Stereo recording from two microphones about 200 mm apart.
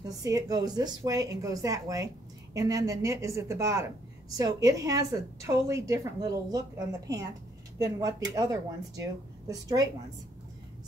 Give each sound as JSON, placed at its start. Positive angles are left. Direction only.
{"t": 0.1, "sound": "a woman's voice", "side_deg": -15}
{"t": 7.8, "sound": "a woman's voice", "side_deg": -20}